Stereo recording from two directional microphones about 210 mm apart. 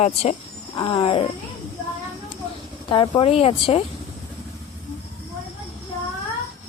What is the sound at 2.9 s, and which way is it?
Speech, 25° left (ahead or behind).